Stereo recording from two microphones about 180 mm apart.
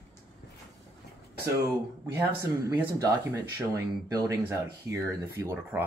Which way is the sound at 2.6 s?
15° right (ahead or behind).